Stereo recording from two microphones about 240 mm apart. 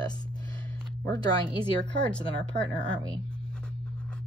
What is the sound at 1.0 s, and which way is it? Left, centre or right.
Speech, centre.